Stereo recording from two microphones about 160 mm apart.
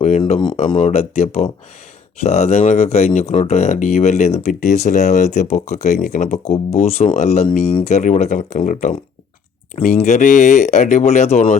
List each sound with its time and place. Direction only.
0.2 s speech: 30° left (ahead or behind); by 6.6 s 55° left (ahead or behind)
6.7 s speech: 40° left (ahead or behind)